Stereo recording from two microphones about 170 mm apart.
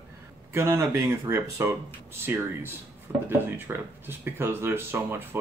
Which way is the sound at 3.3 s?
10° right (ahead or behind).